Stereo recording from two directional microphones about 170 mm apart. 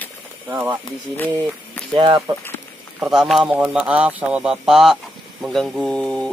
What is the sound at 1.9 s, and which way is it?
Speech, 25° right (ahead or behind).